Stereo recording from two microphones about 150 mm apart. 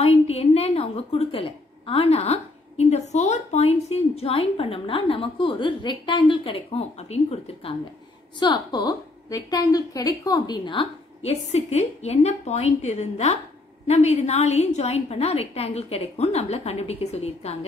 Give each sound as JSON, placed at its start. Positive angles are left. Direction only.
{"t": 0.0, "sound": "a woman's voice", "side_deg": 45}
{"t": 8.4, "sound": "a woman's voice", "side_deg": 30}
{"t": 11.2, "sound": "a woman's voice", "side_deg": 45}